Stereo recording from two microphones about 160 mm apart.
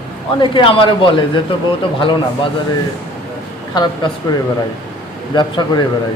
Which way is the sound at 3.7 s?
25° left (ahead or behind).